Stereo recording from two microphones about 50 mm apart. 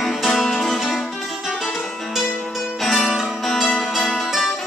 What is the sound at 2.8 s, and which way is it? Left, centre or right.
Music, centre.